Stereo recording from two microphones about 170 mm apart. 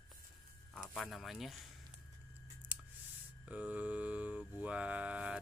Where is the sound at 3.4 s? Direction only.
10° right (ahead or behind).